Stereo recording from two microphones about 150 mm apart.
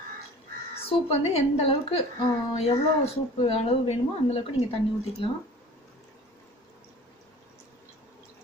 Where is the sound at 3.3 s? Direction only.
40° left (ahead or behind).